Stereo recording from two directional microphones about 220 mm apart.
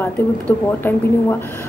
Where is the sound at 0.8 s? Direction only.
10° left (ahead or behind).